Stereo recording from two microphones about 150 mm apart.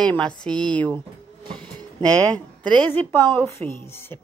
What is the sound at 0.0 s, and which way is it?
Speech, 5° left (ahead or behind).